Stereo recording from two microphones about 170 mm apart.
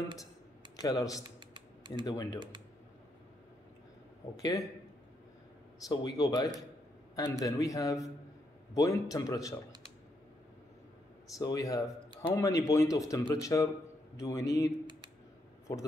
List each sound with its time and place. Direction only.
0.7 s speech: 20° left (ahead or behind)
1.5 s typing: 25° right (ahead or behind)
2.0 s speech: 20° left (ahead or behind)
4.4 s speech: 20° left (ahead or behind)
5.9 s speech: 20° left (ahead or behind)
11.3 s speech: 20° left (ahead or behind)